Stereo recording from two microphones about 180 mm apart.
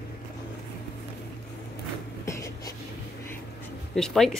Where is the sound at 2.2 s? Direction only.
15° left (ahead or behind).